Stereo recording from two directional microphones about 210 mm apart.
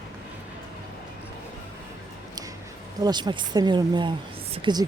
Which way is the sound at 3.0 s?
20° right (ahead or behind).